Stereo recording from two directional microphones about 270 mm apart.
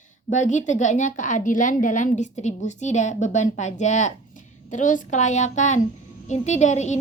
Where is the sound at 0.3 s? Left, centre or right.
Left.